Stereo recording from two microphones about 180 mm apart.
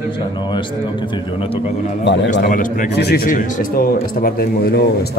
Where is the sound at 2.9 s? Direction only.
65° left (ahead or behind).